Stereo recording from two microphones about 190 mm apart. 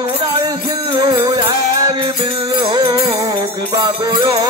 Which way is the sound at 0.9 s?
20° right (ahead or behind).